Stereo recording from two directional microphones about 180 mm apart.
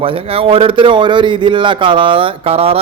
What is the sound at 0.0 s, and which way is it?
A man's voice, 30° right (ahead or behind).